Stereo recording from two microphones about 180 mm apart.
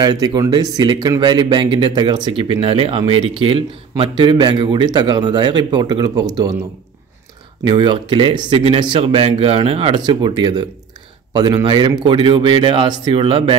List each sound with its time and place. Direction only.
0.0 s speech: 20° right (ahead or behind)
7.6 s speech: 25° right (ahead or behind)